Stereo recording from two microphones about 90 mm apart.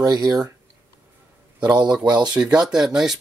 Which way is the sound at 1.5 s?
15° right (ahead or behind).